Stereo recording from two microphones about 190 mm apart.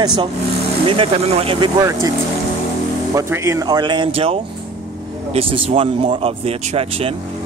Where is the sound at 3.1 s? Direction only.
15° right (ahead or behind).